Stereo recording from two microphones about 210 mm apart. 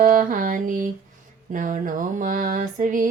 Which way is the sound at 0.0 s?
40° right (ahead or behind).